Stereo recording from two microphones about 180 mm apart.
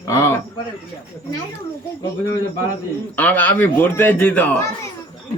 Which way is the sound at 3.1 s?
10° left (ahead or behind).